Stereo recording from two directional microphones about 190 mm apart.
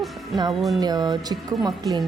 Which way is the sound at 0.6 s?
Centre (ahead or behind).